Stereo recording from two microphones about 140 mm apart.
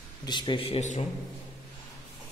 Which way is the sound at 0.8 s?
60° left (ahead or behind).